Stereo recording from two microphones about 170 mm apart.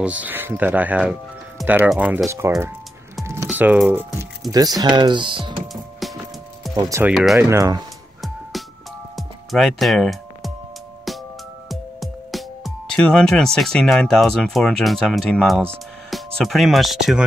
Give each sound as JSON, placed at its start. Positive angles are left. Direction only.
{"t": 0.0, "sound": "speech", "side_deg": -10}
{"t": 3.4, "sound": "a sound", "side_deg": -10}
{"t": 4.5, "sound": "speech", "side_deg": -20}
{"t": 5.4, "sound": "music", "side_deg": 0}
{"t": 6.7, "sound": "speech", "side_deg": -15}
{"t": 9.1, "sound": "music", "side_deg": 0}
{"t": 11.7, "sound": "speech", "side_deg": 0}